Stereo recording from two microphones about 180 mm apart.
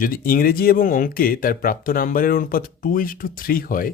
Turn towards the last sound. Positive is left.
turn(degrees=50)  # may be behind; listen again after turning